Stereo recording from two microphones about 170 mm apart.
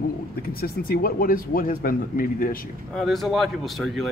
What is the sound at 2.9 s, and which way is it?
A man's voice, centre (ahead or behind).